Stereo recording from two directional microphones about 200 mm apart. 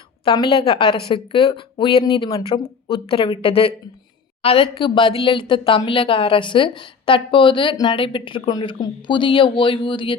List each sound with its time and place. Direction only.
0.3 s a woman's voice: 20° left (ahead or behind)